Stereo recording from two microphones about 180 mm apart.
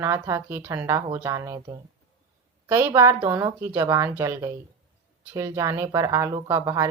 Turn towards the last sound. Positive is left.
turn(degrees=-15)  # may be behind; listen again after turning